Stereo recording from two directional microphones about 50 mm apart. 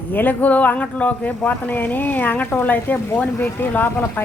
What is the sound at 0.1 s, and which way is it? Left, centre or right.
Speech, left.